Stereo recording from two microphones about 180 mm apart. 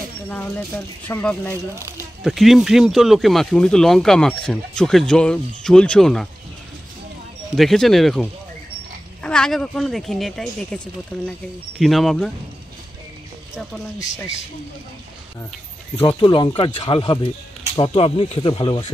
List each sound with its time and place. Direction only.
1.0 s speech: 10° left (ahead or behind)
1.8 s speech: 15° right (ahead or behind)
2.2 s speech: centre (ahead or behind)
7.5 s speech: centre (ahead or behind)
13.9 s speech: 20° left (ahead or behind)
16.0 s speech: 25° left (ahead or behind)